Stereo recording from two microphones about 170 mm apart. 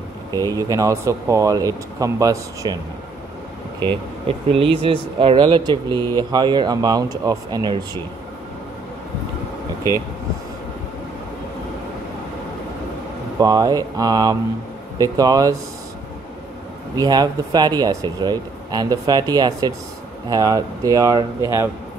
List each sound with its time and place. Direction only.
0.6 s speech: 20° right (ahead or behind)
3.9 s speech: 30° right (ahead or behind)
13.4 s speech: 25° right (ahead or behind)
16.9 s speech: 25° right (ahead or behind)